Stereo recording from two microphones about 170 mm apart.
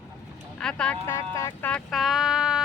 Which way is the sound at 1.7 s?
5° left (ahead or behind).